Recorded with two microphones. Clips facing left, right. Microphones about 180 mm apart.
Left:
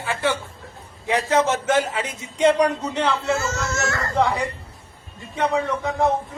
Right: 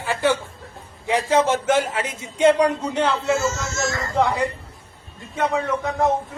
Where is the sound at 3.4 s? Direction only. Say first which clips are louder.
Right 1 dB; 60° left (ahead or behind).